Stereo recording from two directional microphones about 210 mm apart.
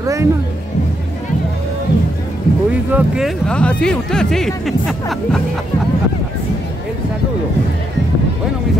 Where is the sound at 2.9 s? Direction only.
Centre (ahead or behind).